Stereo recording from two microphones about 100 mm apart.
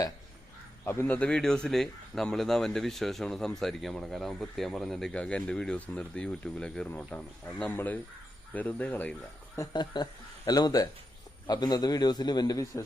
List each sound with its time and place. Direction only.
1.0 s a man's voice: 10° left (ahead or behind)
9.7 s a man's voice: 45° left (ahead or behind)